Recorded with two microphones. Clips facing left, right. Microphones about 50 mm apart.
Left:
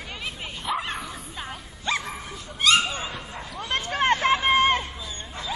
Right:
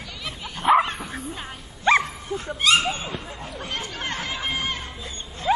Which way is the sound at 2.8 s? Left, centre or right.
Right.